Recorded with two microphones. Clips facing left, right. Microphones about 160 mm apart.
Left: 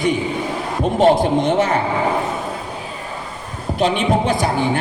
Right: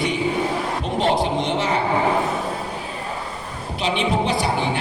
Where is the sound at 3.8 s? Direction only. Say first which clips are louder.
Left 4 dB; 50° left (ahead or behind).